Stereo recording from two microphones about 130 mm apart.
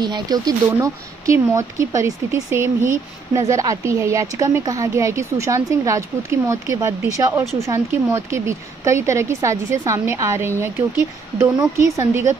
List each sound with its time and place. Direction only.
0.0 s a woman's voice: 30° right (ahead or behind)
11.7 s a woman's voice: 20° right (ahead or behind)